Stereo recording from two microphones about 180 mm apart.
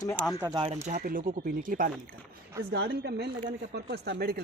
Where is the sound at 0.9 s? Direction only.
45° right (ahead or behind).